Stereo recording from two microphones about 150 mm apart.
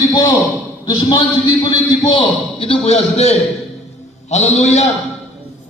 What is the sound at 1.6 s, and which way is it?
A man's voice, 30° left (ahead or behind).